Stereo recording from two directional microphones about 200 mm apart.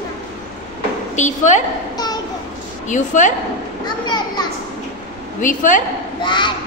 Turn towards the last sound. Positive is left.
turn(degrees=25)  # may be behind; listen again after turning